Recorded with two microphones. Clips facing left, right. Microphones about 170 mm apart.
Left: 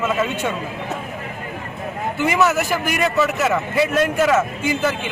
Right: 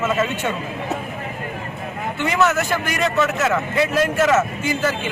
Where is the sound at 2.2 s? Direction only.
5° left (ahead or behind).